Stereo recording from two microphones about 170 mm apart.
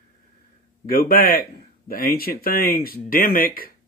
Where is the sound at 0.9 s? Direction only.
60° left (ahead or behind).